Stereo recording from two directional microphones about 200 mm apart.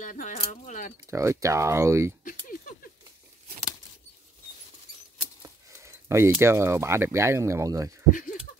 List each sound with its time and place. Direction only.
0.0 s speech: 40° left (ahead or behind)
1.1 s speech: 15° right (ahead or behind)
5.4 s speech: 15° right (ahead or behind)
8.1 s speech: 45° left (ahead or behind)